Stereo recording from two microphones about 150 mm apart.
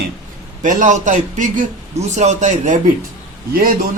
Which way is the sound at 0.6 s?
60° right (ahead or behind).